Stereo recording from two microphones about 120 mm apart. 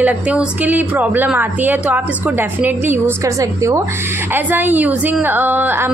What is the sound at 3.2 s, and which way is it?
A woman's voice, 25° right (ahead or behind).